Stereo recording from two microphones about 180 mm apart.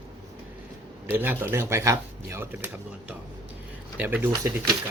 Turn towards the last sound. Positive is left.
turn(degrees=-15)  # may be behind; listen again after turning